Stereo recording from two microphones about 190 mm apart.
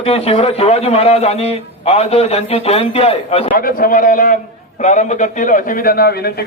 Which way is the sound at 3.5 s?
50° left (ahead or behind).